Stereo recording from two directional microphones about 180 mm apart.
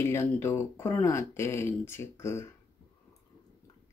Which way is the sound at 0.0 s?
15° left (ahead or behind).